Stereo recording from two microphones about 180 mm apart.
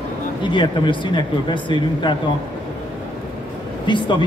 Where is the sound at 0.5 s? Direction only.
25° left (ahead or behind).